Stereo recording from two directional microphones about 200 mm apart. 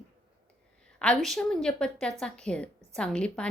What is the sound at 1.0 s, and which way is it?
A woman's voice, 5° left (ahead or behind).